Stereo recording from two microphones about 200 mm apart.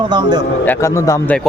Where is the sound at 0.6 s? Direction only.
10° left (ahead or behind).